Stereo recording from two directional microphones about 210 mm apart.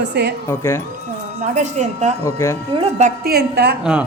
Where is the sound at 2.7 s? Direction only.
25° right (ahead or behind).